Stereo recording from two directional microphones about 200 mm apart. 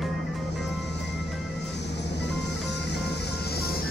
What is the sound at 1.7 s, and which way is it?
Vehicle, 60° left (ahead or behind).